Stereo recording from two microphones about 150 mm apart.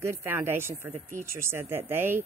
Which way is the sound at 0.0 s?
15° right (ahead or behind).